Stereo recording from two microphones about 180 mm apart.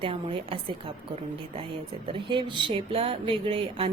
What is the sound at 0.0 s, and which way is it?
Speech, 30° right (ahead or behind).